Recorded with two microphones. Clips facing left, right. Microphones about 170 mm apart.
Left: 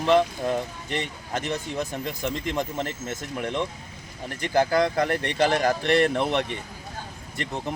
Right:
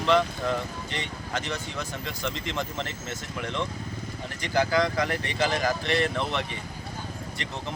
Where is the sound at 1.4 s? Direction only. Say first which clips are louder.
Left 5 dB; 45° left (ahead or behind).